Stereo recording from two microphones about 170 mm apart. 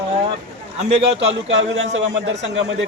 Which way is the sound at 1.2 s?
90° right.